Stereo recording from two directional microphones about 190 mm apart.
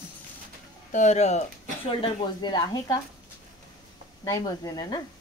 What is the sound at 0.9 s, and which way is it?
Speech, 40° left (ahead or behind).